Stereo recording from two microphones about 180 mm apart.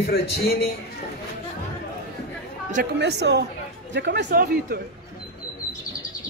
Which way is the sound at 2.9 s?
70° right (ahead or behind).